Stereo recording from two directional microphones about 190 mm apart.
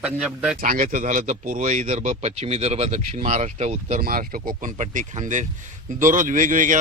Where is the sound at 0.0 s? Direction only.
5° right (ahead or behind).